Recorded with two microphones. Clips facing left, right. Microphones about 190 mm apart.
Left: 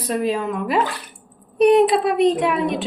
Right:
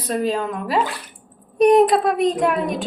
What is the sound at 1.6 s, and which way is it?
Speech, 45° right (ahead or behind).